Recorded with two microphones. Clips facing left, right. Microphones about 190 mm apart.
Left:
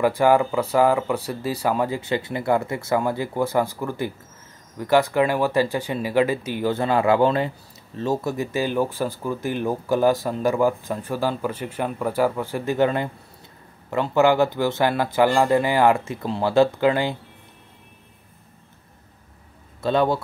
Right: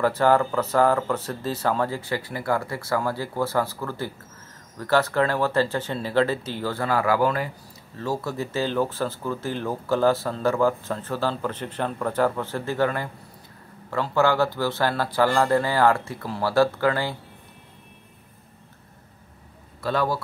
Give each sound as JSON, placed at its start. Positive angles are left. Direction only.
{"t": 0.0, "sound": "speech", "side_deg": 15}
{"t": 19.8, "sound": "speech", "side_deg": 25}